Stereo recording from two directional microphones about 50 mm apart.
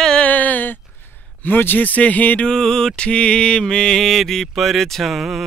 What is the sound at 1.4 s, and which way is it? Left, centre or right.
Speech, left.